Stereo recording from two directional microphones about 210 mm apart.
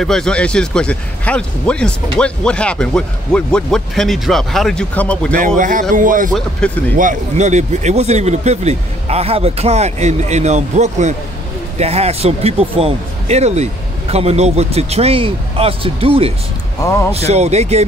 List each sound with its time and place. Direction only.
0.0 s speech: 5° left (ahead or behind)
5.6 s speech: 40° right (ahead or behind)
6.6 s speech: 5° left (ahead or behind)
7.0 s speech: 35° right (ahead or behind)
16.8 s speech: 15° left (ahead or behind)
17.1 s speech: 30° right (ahead or behind)